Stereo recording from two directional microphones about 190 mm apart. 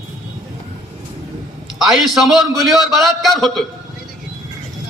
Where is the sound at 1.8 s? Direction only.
Centre (ahead or behind).